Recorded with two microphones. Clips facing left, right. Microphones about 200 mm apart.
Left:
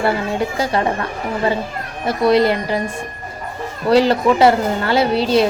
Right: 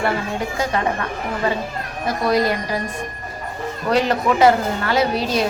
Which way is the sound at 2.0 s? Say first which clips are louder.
Left 5 dB; 30° left (ahead or behind).